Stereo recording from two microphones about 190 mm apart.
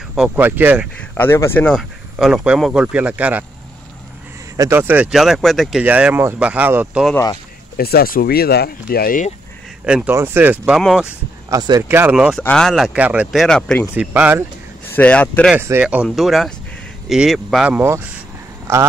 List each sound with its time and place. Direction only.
0.1 s speech: 5° right (ahead or behind)
0.9 s speech: 10° left (ahead or behind); by 3.4 s 5° right (ahead or behind)
4.6 s speech: 15° right (ahead or behind)
7.7 s speech: 55° left (ahead or behind)
9.8 s speech: 5° right (ahead or behind)
11.5 s speech: 20° right (ahead or behind); by 13.8 s 5° left (ahead or behind)
13.9 s speech: 10° right (ahead or behind)
15.0 s speech: 5° left (ahead or behind)
15.5 s speech: 10° right (ahead or behind)